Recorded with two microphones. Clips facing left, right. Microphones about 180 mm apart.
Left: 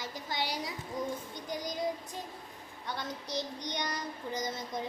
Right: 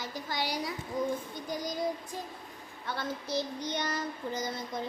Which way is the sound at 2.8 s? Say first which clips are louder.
Right 3 dB; 15° left (ahead or behind).